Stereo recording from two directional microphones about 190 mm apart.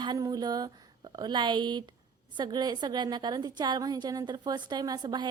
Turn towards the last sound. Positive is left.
turn(degrees=-20)  # may be behind; listen again after turning